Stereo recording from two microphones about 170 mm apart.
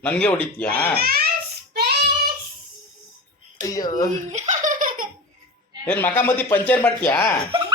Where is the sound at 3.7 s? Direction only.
20° left (ahead or behind).